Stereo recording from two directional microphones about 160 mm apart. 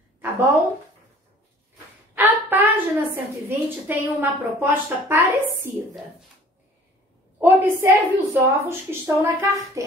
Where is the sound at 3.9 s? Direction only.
10° right (ahead or behind).